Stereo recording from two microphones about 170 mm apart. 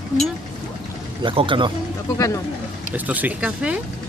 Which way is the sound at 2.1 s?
20° left (ahead or behind).